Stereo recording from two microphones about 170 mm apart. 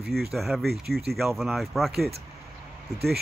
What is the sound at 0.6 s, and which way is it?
Speech, 70° right (ahead or behind).